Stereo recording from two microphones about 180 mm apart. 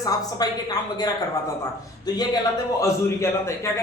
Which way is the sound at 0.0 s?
20° left (ahead or behind).